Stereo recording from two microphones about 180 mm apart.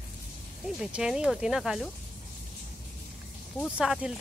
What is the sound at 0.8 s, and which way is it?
Speech, 5° right (ahead or behind).